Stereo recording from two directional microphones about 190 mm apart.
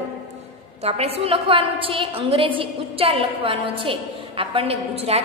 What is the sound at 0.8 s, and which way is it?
A woman's voice, 30° right (ahead or behind).